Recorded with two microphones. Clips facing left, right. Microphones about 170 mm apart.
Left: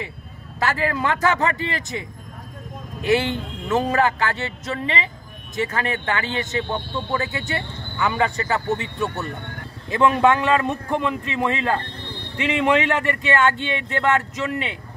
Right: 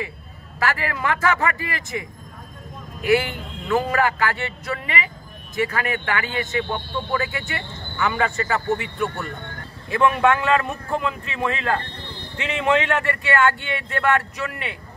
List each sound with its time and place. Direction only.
0.6 s a man's voice: 20° left (ahead or behind)